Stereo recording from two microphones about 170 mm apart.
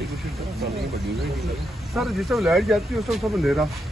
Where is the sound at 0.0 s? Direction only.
Centre (ahead or behind).